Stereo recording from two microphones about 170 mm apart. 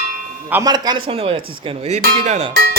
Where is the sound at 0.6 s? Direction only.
25° right (ahead or behind).